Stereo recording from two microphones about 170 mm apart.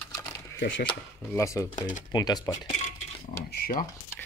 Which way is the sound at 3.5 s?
60° left (ahead or behind).